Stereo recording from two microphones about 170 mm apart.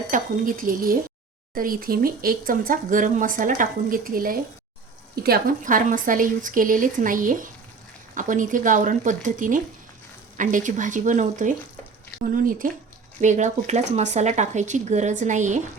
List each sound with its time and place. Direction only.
0.1 s speech: 55° right (ahead or behind)